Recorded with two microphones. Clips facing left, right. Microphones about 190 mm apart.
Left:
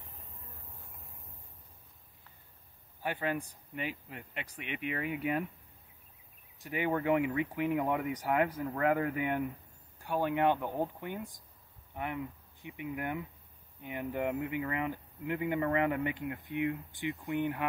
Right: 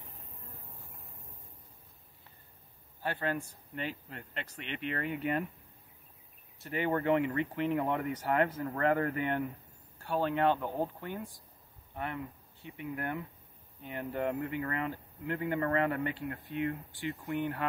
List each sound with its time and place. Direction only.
3.0 s speech: 15° left (ahead or behind)
6.6 s speech: 10° left (ahead or behind)